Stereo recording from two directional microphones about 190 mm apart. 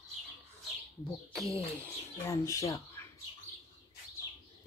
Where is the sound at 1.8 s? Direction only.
15° left (ahead or behind).